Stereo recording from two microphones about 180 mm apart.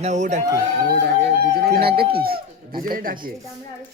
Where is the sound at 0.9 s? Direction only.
70° right (ahead or behind).